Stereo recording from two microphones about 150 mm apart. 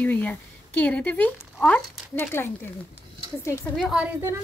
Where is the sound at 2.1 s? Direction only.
15° left (ahead or behind).